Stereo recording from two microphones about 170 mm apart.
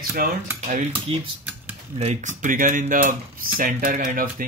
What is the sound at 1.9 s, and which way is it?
Speech, 40° right (ahead or behind).